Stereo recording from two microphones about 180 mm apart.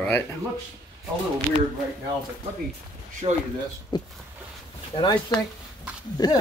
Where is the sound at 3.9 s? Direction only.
25° left (ahead or behind).